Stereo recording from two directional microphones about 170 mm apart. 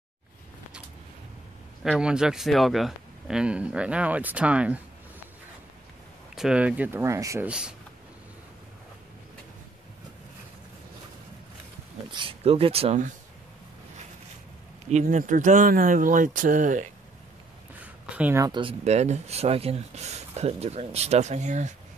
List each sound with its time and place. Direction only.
1.8 s speech: 5° right (ahead or behind)
6.3 s speech: 5° right (ahead or behind)
7.4 s speech: 5° right (ahead or behind)
12.1 s speech: 30° right (ahead or behind)
14.9 s speech: 45° right (ahead or behind)
18.0 s speech: 10° right (ahead or behind)
18.4 s speech: 30° right (ahead or behind); by 21.7 s 45° right (ahead or behind)